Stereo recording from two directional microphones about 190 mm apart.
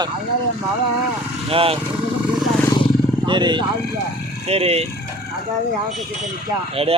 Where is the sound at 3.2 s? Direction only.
25° right (ahead or behind).